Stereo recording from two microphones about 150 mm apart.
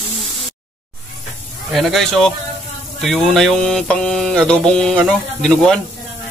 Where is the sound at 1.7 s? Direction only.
Centre (ahead or behind).